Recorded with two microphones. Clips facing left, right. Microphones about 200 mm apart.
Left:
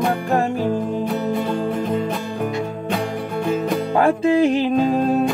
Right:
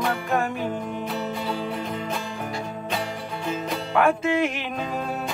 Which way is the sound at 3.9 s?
35° left (ahead or behind).